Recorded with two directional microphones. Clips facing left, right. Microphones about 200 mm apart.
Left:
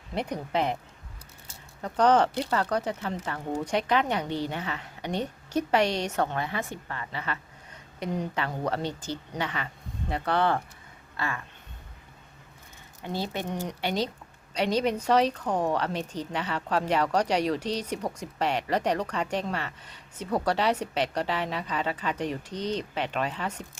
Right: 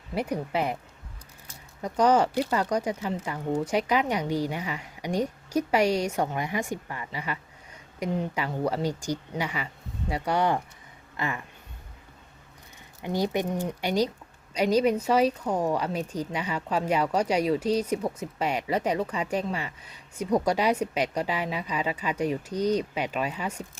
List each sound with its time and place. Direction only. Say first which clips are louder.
0.1 s speech: right 1 dB; 10° right (ahead or behind)
1.8 s speech: even; 10° right (ahead or behind)
13.0 s speech: right 5 dB; 15° right (ahead or behind)